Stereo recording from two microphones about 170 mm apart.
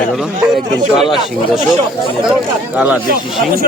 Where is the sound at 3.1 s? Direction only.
65° right (ahead or behind).